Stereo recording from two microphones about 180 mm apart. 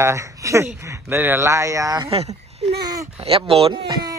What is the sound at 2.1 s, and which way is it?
Speech, 30° right (ahead or behind).